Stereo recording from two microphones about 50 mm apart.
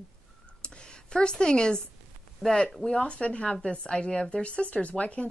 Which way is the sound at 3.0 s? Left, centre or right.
Left.